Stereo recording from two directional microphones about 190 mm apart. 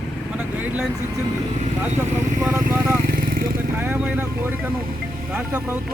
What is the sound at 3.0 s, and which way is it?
Vehicle, 50° right (ahead or behind).